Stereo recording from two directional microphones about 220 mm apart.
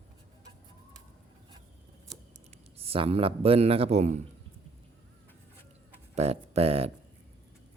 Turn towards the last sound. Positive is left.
turn(degrees=-25)  # may be behind; listen again after turning